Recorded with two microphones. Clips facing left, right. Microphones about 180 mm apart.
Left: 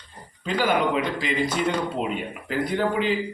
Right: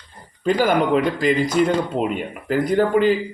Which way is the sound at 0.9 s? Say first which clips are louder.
Right 7 dB; 45° right (ahead or behind).